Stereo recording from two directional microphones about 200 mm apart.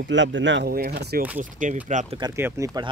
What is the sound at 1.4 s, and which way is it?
Speech, 40° right (ahead or behind).